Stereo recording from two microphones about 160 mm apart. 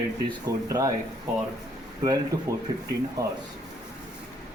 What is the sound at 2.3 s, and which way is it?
Speech, 20° right (ahead or behind).